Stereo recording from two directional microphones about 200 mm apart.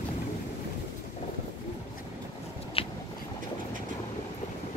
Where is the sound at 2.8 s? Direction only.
30° left (ahead or behind).